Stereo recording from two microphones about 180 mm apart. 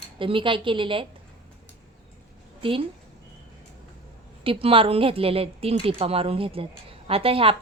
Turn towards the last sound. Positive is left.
turn(degrees=-30)  # may be behind; listen again after turning